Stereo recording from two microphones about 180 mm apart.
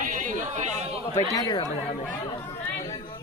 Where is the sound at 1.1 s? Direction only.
20° left (ahead or behind).